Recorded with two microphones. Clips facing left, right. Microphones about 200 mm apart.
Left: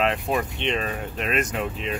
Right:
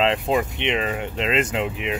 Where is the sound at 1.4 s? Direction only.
30° right (ahead or behind).